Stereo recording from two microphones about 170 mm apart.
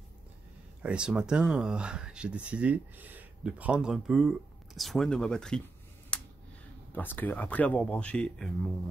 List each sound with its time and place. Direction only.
0.8 s speech: 5° right (ahead or behind)
6.1 s a sound: 5° left (ahead or behind)
7.0 s speech: 10° left (ahead or behind)